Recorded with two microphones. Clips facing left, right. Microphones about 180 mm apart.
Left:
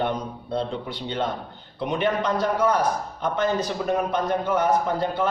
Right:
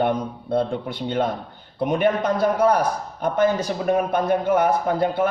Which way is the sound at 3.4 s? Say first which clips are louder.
Right 4 dB; 10° right (ahead or behind).